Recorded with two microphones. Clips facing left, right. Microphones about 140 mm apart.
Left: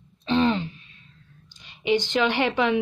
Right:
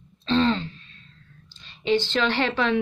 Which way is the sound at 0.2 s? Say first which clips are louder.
Even; 15° left (ahead or behind).